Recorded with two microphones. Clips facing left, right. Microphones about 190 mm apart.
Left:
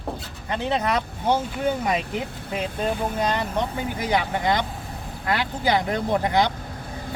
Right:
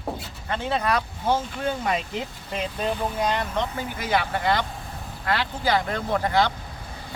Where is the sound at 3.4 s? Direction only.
15° left (ahead or behind).